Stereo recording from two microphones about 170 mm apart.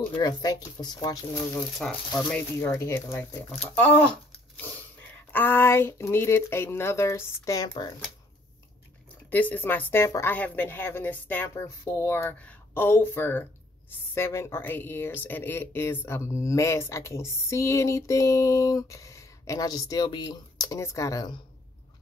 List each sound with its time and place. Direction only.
0.2 s speech: 25° left (ahead or behind)
1.8 s speech: 5° left (ahead or behind); by 7.9 s 20° left (ahead or behind)
9.1 s speech: 10° left (ahead or behind)